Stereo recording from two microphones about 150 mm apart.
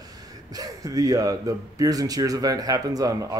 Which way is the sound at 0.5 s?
25° right (ahead or behind).